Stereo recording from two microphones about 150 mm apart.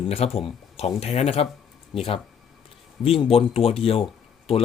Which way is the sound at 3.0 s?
40° left (ahead or behind).